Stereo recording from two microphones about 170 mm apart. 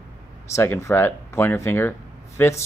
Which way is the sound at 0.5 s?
15° left (ahead or behind).